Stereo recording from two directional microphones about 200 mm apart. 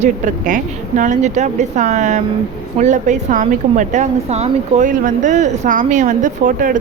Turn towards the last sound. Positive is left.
turn(degrees=-40)  # may be behind; listen again after turning